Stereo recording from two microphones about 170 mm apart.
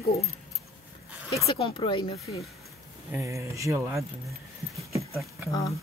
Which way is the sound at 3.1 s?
15° right (ahead or behind).